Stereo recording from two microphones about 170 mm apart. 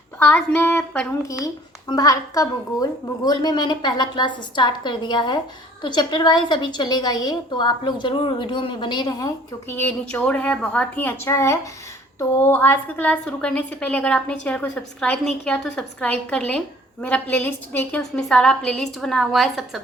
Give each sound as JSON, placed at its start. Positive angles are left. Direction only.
{"t": 0.2, "sound": "a woman's voice", "side_deg": 10}
{"t": 1.9, "sound": "a woman's voice", "side_deg": 20}